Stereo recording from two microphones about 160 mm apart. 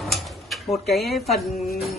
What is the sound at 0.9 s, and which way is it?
Speech, centre (ahead or behind).